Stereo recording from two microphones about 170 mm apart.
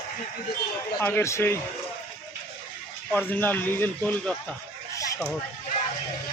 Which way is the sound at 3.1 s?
10° left (ahead or behind).